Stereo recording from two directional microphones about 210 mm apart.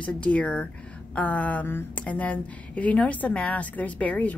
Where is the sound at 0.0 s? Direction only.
5° left (ahead or behind).